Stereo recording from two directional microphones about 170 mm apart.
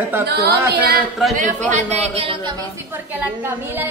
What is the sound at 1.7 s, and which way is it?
Speech, 45° right (ahead or behind).